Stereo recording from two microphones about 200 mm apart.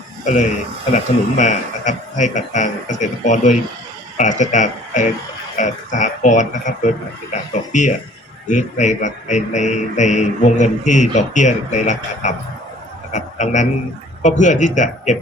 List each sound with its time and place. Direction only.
0.9 s a man's voice: 40° left (ahead or behind)